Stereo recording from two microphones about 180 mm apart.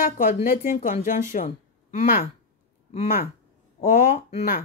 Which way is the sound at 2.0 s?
55° left (ahead or behind).